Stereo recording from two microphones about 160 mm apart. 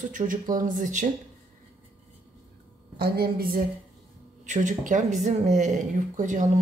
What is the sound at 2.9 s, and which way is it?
Speech, 75° right (ahead or behind).